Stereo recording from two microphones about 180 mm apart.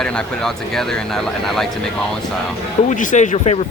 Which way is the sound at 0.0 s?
5° left (ahead or behind).